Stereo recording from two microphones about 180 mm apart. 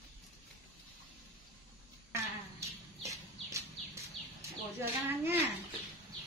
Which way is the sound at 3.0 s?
15° right (ahead or behind).